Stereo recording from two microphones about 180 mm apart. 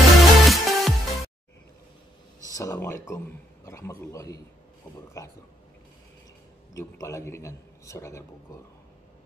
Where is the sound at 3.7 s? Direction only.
15° left (ahead or behind).